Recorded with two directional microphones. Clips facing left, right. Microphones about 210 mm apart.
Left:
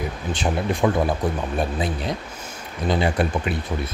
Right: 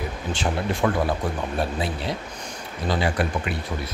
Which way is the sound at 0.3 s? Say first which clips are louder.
Left 2 dB; 15° left (ahead or behind).